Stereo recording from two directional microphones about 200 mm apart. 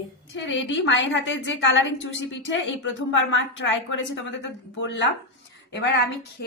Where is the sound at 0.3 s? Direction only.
65° left (ahead or behind).